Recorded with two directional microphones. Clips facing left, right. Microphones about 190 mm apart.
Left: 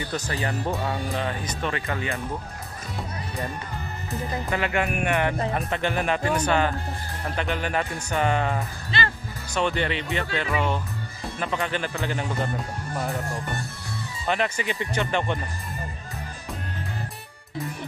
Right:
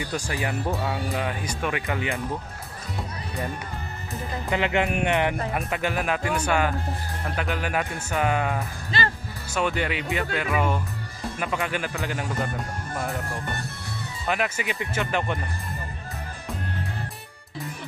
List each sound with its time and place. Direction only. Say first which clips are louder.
0.0 s speech: even; 10° right (ahead or behind)
4.5 s speech: right 3 dB; 20° right (ahead or behind)
5.5 s speech: left 1 dB; 5° right (ahead or behind)
14.2 s speech: left 1 dB; 5° right (ahead or behind)